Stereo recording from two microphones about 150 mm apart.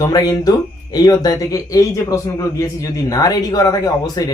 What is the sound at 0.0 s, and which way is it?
Speech, 25° left (ahead or behind).